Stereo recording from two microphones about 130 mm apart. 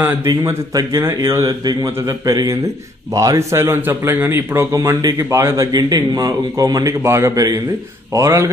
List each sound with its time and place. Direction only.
0.3 s a man's voice: 25° right (ahead or behind)
5.7 s a man's voice: 30° right (ahead or behind)